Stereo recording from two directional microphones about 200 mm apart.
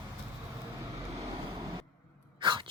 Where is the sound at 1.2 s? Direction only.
20° right (ahead or behind).